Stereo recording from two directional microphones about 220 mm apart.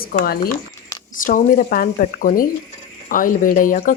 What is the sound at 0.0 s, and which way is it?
Speech, 40° left (ahead or behind).